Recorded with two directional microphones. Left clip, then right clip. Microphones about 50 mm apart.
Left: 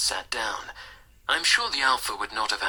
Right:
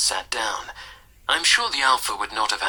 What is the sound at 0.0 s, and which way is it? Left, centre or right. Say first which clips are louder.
Speech: right 4 dB; left.